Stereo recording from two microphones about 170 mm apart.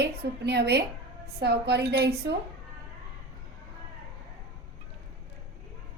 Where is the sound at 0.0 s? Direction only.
80° right.